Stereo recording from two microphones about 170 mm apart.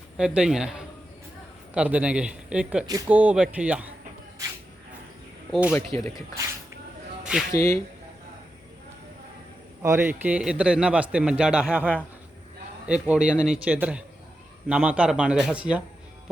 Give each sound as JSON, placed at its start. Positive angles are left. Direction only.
{"t": 0.2, "sound": "a man's voice", "side_deg": -5}
{"t": 5.5, "sound": "speech", "side_deg": -10}
{"t": 5.7, "sound": "speech", "side_deg": 20}
{"t": 7.5, "sound": "speech", "side_deg": 15}
{"t": 9.8, "sound": "a man's voice", "side_deg": -15}